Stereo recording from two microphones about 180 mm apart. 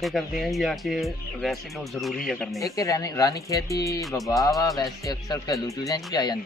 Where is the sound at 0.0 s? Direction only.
Centre (ahead or behind).